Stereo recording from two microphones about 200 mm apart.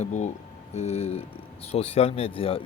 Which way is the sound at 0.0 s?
35° left (ahead or behind).